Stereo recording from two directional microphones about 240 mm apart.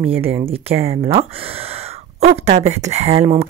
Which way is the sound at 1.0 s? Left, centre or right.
Right.